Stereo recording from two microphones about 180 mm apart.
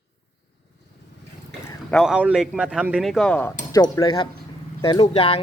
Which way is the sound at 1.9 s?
5° right (ahead or behind).